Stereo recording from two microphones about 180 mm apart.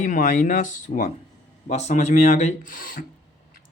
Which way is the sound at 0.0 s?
45° left (ahead or behind).